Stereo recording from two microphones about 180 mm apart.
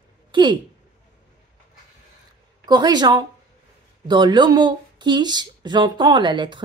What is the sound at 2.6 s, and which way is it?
Speech, 20° right (ahead or behind).